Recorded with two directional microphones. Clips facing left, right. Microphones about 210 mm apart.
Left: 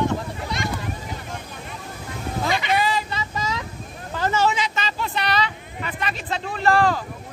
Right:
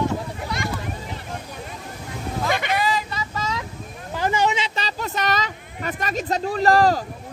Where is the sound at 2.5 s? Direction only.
55° right (ahead or behind).